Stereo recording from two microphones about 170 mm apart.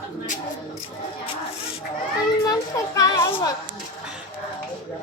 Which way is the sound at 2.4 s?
20° left (ahead or behind).